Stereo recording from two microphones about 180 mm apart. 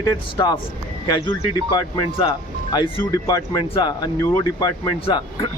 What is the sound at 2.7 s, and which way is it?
Speech, 20° left (ahead or behind).